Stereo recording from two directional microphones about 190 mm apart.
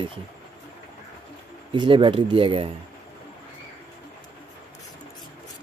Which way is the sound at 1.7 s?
25° right (ahead or behind).